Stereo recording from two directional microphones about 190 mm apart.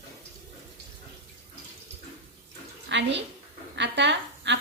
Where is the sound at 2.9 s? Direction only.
70° right (ahead or behind).